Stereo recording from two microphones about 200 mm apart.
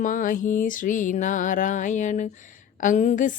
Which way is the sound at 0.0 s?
40° left (ahead or behind).